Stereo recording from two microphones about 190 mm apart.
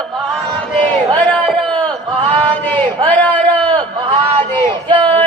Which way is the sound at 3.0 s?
10° left (ahead or behind).